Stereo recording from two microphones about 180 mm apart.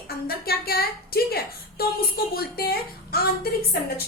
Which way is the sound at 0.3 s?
60° left (ahead or behind).